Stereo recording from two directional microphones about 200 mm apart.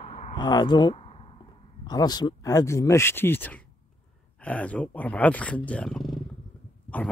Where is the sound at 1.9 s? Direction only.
20° left (ahead or behind).